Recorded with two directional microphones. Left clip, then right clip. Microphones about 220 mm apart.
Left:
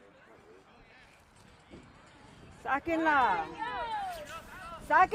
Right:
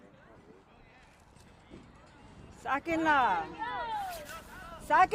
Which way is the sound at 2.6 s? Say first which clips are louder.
Even; 50° right (ahead or behind).